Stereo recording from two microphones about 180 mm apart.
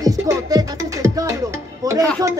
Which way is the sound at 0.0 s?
20° right (ahead or behind).